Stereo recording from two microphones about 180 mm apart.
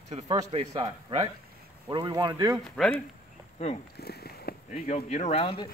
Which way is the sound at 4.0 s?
60° left (ahead or behind).